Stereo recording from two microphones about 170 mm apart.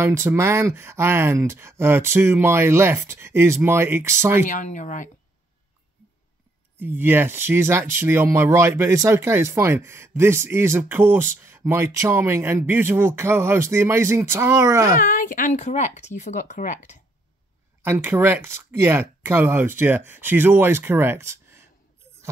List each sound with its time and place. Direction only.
0.0 s speech: 15° right (ahead or behind)
4.5 s speech: 45° left (ahead or behind)
6.8 s speech: 10° right (ahead or behind)
15.0 s speech: 50° left (ahead or behind)
17.8 s speech: 15° right (ahead or behind)